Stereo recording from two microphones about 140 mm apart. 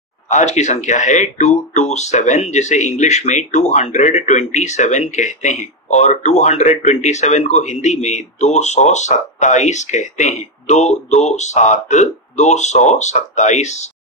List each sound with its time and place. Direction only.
0.3 s speech: 55° left (ahead or behind)